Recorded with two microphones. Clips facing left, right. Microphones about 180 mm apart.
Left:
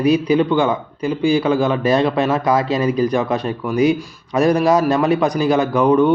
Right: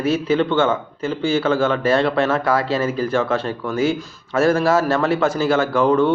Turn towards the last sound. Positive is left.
turn(degrees=15)  # may be behind; listen again after turning